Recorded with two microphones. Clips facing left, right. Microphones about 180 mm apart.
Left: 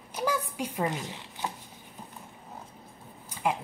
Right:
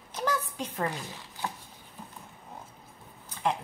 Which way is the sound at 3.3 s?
10° left (ahead or behind).